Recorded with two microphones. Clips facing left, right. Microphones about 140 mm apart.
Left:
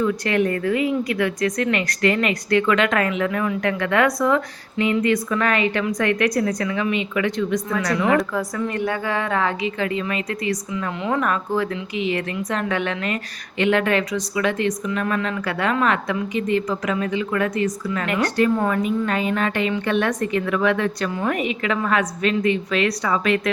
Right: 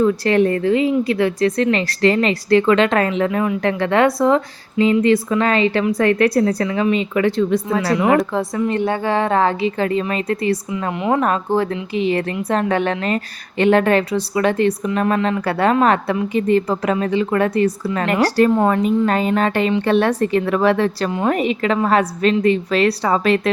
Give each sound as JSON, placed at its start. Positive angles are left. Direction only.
{"t": 0.0, "sound": "a woman's voice", "side_deg": -35}